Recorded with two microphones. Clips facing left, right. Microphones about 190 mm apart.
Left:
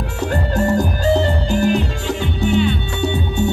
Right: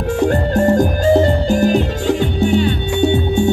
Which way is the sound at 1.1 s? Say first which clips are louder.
Right 4 dB; 40° right (ahead or behind).